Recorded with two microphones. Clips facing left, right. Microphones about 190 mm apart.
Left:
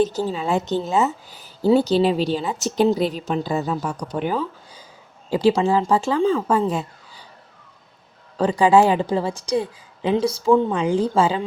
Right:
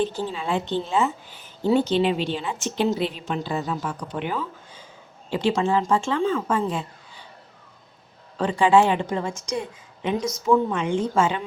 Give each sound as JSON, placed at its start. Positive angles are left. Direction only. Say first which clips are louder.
{"t": 0.0, "sound": "a woman's voice", "louder": "left 5 dB", "side_deg": 40}
{"t": 8.4, "sound": "a woman's voice", "louder": "left 3 dB", "side_deg": 40}